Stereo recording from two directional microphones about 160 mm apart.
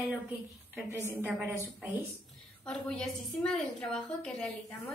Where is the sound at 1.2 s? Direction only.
20° right (ahead or behind).